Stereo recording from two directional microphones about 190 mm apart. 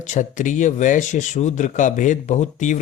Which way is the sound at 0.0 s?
40° left (ahead or behind).